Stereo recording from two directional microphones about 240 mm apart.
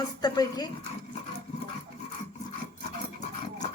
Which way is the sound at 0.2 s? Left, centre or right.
Centre.